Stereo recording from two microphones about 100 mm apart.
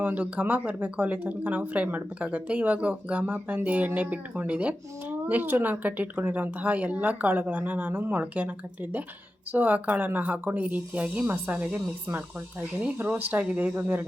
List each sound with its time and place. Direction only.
0.0 s speech: 15° right (ahead or behind)